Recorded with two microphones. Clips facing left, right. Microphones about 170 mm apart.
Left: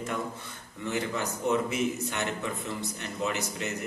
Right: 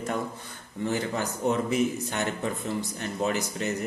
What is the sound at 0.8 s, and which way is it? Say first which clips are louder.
A man's voice: right 2 dB; 35° right (ahead or behind).